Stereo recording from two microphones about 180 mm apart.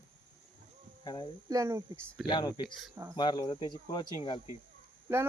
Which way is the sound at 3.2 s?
25° left (ahead or behind).